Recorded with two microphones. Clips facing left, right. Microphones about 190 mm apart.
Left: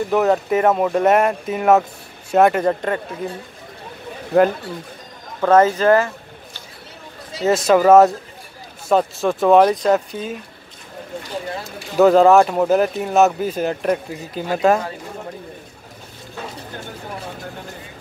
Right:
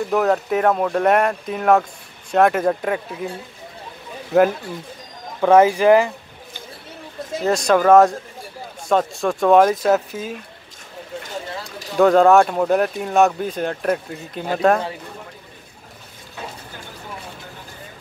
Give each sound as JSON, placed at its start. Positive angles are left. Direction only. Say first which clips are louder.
{"t": 0.1, "sound": "speech", "louder": "left 2 dB", "side_deg": 0}
{"t": 4.3, "sound": "speech", "louder": "even", "side_deg": 0}
{"t": 7.4, "sound": "speech", "louder": "left 2 dB", "side_deg": 5}
{"t": 12.0, "sound": "speech", "louder": "left 1 dB", "side_deg": 5}